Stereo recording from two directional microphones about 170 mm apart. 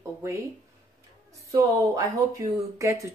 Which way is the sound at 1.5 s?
20° right (ahead or behind).